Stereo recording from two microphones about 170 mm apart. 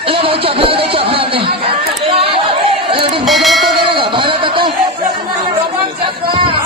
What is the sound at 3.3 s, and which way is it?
Music, centre (ahead or behind).